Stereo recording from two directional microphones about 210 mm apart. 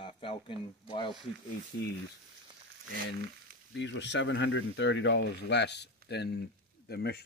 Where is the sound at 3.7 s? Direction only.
60° left (ahead or behind).